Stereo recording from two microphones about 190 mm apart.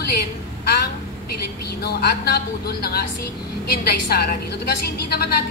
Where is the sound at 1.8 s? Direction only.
55° left (ahead or behind).